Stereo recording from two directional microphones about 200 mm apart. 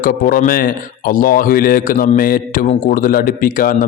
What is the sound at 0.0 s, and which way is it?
Speech, 45° left (ahead or behind).